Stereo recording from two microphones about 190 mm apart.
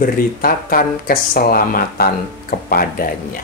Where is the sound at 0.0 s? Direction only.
50° left (ahead or behind).